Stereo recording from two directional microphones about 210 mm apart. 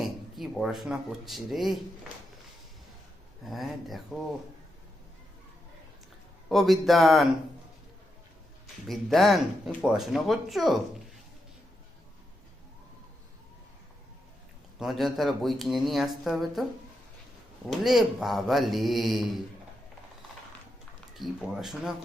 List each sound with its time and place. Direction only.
0.0 s speech: centre (ahead or behind)
3.5 s speech: centre (ahead or behind)
6.5 s speech: centre (ahead or behind)
8.9 s speech: centre (ahead or behind)
14.8 s speech: centre (ahead or behind)
17.7 s speech: centre (ahead or behind)
21.2 s speech: centre (ahead or behind)